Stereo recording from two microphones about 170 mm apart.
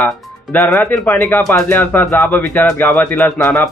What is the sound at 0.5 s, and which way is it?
Speech, 15° left (ahead or behind).